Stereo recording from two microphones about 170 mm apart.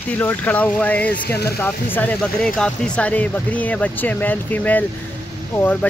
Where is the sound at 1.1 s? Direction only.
70° left (ahead or behind).